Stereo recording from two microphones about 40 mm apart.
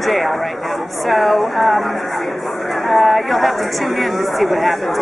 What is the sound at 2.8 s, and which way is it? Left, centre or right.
A woman's voice, centre.